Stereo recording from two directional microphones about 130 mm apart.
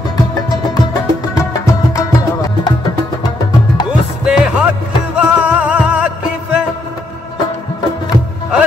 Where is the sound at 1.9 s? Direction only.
30° left (ahead or behind).